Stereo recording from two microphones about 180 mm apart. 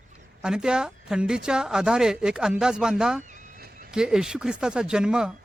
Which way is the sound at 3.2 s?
50° right (ahead or behind).